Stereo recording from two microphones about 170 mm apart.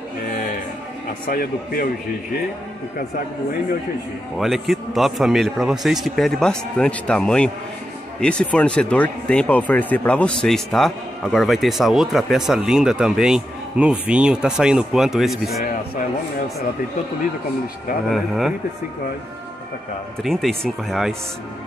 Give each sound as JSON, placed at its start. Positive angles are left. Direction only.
{"t": 1.3, "sound": "speech", "side_deg": 60}
{"t": 4.4, "sound": "speech", "side_deg": 0}
{"t": 18.1, "sound": "speech", "side_deg": 0}
{"t": 20.2, "sound": "speech", "side_deg": 0}